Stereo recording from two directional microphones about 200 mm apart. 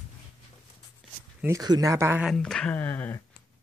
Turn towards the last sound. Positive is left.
turn(degrees=10)  # may be behind; listen again after turning